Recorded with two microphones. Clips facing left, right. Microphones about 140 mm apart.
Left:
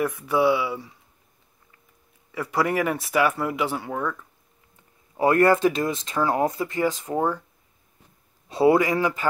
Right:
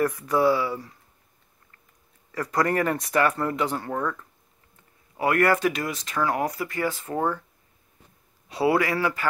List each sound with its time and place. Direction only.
0.0 s speech: 5° left (ahead or behind)
2.3 s speech: 5° left (ahead or behind)
5.1 s speech: 25° left (ahead or behind)
8.5 s speech: 20° left (ahead or behind)